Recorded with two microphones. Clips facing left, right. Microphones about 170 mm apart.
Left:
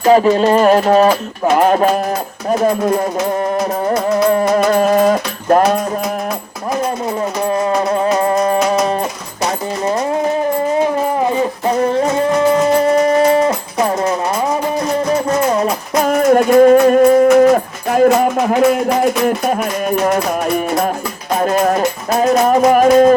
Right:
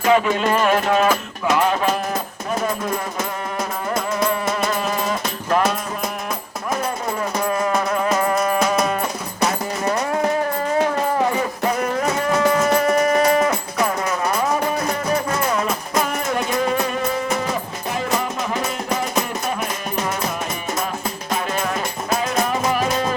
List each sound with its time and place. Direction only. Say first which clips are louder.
0.0 s music: left 7 dB; 35° left (ahead or behind)
4.3 s music: left 9 dB; 45° left (ahead or behind)
7.4 s music: left 6 dB; 30° left (ahead or behind)
11.8 s music: left 7 dB; 30° left (ahead or behind)
16.0 s music: left 12 dB; 50° left (ahead or behind)
21.3 s music: left 11 dB; 45° left (ahead or behind)